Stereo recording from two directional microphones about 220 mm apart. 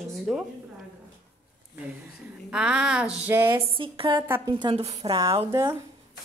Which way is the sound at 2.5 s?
5° right (ahead or behind).